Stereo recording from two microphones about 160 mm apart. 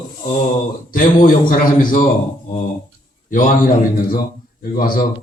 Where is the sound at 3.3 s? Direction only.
55° left (ahead or behind).